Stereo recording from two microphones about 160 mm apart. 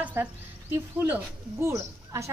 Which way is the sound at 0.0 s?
10° right (ahead or behind).